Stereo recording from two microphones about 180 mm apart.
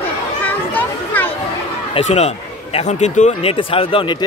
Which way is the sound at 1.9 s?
40° left (ahead or behind).